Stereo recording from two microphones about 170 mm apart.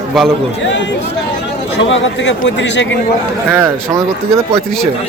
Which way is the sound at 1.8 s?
90° left.